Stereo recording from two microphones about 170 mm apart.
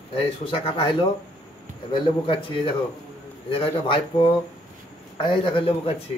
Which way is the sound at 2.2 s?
30° left (ahead or behind).